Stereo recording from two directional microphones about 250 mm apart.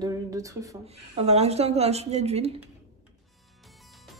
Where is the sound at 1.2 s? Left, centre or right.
Right.